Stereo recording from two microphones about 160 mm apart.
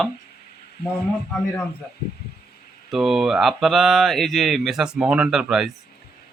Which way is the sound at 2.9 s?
Centre (ahead or behind).